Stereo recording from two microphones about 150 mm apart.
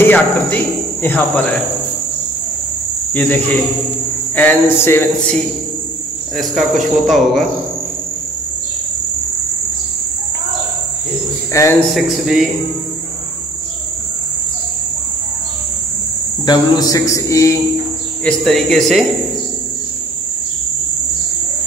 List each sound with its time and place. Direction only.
0.0 s cricket: 10° left (ahead or behind)
1.0 s speech: 10° left (ahead or behind)
3.1 s cricket: 10° left (ahead or behind)
4.4 s speech: 15° left (ahead or behind)
6.3 s speech: centre (ahead or behind)
11.6 s a man's voice: 20° left (ahead or behind)
11.9 s speech: centre (ahead or behind)
16.4 s a man's voice: 25° left (ahead or behind)
18.2 s speech: 5° left (ahead or behind)